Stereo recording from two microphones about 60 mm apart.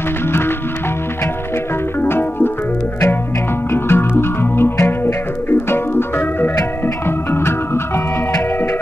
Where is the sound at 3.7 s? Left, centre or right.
Left.